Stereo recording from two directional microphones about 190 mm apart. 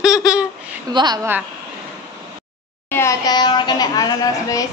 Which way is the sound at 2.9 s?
15° left (ahead or behind).